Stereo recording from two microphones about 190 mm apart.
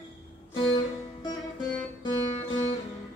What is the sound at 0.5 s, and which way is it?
Music, 25° left (ahead or behind).